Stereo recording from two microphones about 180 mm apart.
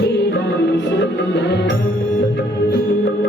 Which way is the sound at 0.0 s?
75° left (ahead or behind).